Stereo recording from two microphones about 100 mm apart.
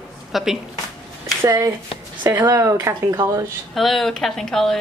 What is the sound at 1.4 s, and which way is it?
Speech, 30° right (ahead or behind).